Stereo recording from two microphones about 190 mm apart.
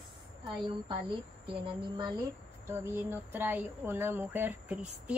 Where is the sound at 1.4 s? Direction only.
25° right (ahead or behind).